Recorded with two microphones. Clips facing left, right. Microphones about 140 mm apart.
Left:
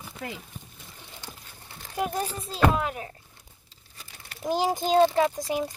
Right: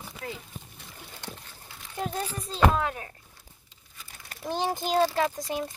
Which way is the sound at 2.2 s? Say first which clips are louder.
Left 1 dB; 30° left (ahead or behind).